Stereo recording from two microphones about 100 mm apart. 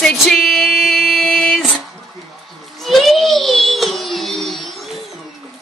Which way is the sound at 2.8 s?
Centre (ahead or behind).